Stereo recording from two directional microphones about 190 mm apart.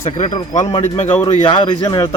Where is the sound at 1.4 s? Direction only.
25° left (ahead or behind).